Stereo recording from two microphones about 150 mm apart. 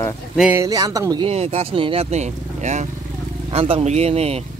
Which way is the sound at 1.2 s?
45° right (ahead or behind).